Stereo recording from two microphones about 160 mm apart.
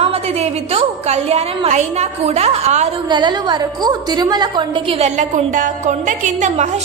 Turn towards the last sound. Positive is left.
turn(degrees=-50)  # may be behind; listen again after turning